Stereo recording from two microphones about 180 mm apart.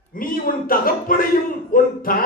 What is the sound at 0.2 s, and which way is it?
Speech, 50° left (ahead or behind).